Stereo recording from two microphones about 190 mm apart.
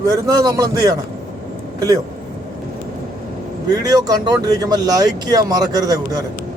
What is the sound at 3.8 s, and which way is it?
Speech, 20° right (ahead or behind).